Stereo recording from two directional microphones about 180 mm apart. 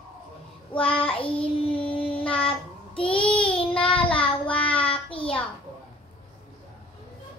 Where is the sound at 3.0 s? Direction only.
5° left (ahead or behind).